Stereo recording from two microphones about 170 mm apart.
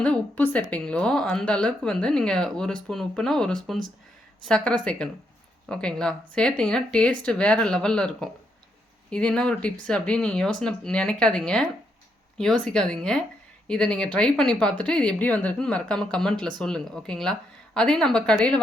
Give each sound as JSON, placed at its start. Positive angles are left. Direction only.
{"t": 0.0, "sound": "a woman's voice", "side_deg": 5}